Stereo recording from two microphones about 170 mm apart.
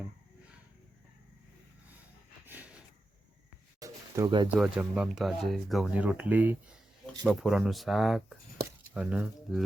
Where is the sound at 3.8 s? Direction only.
25° right (ahead or behind).